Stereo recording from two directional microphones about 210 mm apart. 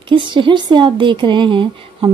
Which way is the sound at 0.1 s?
25° right (ahead or behind).